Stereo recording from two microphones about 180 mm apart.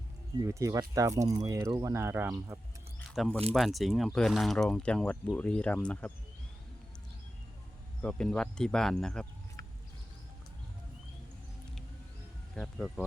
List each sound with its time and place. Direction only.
0.4 s speech: 15° right (ahead or behind)
3.2 s speech: 5° left (ahead or behind)
8.0 s speech: 5° left (ahead or behind)
12.6 s speech: 5° left (ahead or behind)